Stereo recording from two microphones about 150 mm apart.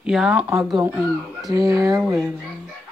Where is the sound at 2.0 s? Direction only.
Centre (ahead or behind).